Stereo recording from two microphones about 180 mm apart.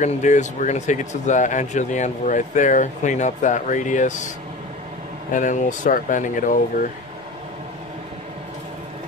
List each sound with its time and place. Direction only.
0.0 s speech: 40° left (ahead or behind)
5.3 s speech: 45° left (ahead or behind)